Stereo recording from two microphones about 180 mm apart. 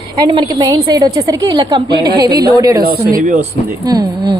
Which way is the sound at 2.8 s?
55° right (ahead or behind).